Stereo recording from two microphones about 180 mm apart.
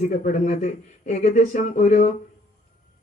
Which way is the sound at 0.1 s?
40° left (ahead or behind).